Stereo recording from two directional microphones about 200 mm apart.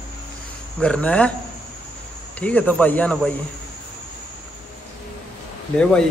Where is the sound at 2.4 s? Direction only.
10° left (ahead or behind).